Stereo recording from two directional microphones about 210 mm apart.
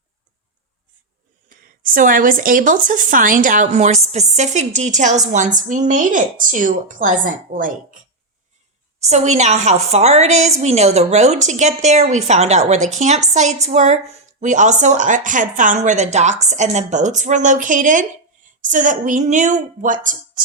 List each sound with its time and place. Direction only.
1.5 s a woman's voice: 40° right (ahead or behind)
9.0 s a woman's voice: 30° right (ahead or behind)